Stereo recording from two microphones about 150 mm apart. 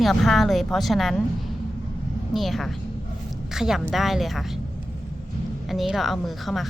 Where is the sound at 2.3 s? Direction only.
Centre (ahead or behind).